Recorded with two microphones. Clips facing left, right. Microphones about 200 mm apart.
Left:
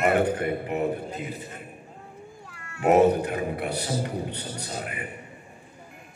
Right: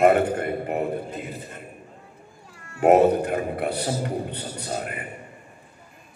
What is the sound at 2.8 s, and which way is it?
Speech, 50° right (ahead or behind).